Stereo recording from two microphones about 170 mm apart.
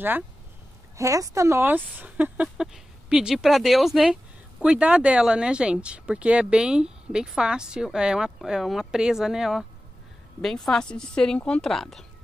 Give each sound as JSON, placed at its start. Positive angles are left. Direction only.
{"t": 0.9, "sound": "a woman's voice", "side_deg": -20}